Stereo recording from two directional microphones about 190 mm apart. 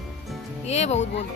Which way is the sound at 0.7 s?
35° left (ahead or behind).